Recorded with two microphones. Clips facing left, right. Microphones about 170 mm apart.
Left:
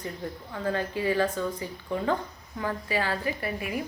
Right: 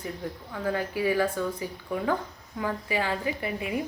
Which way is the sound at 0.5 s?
10° right (ahead or behind).